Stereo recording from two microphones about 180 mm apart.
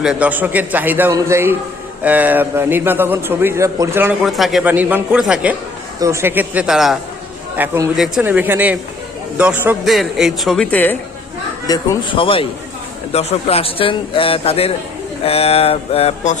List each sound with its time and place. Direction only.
0.0 s a man's voice: 5° right (ahead or behind)
4.3 s a man's voice: centre (ahead or behind)
6.0 s a man's voice: 15° right (ahead or behind); by 10.9 s 10° left (ahead or behind)
11.7 s a man's voice: 25° left (ahead or behind)